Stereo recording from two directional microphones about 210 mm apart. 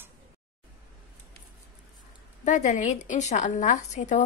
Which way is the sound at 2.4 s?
35° left (ahead or behind).